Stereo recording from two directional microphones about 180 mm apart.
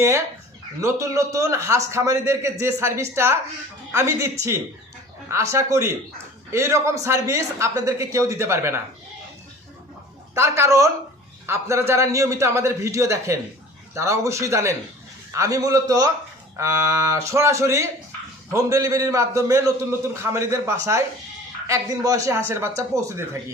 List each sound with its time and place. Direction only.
0.8 s a man's voice: 15° right (ahead or behind)
10.3 s a man's voice: 15° right (ahead or behind)